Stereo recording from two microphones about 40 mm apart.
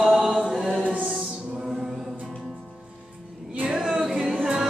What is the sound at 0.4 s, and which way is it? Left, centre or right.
Chant, centre.